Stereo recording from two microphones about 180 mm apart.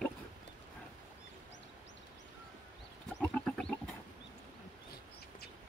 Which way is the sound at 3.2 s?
5° left (ahead or behind).